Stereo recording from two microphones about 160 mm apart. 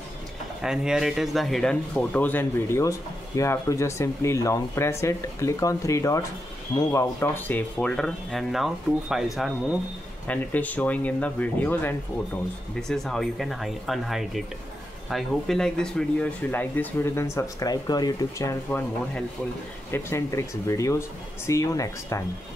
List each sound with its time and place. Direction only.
0.6 s speech: 5° right (ahead or behind)
10.2 s speech: 10° left (ahead or behind)
18.7 s speech: 10° left (ahead or behind)